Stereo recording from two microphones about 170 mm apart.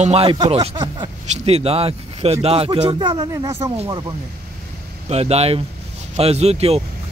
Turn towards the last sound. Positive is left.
turn(degrees=-40)  # may be behind; listen again after turning